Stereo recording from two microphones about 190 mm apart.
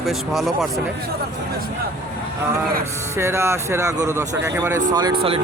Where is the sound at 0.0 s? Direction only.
Centre (ahead or behind).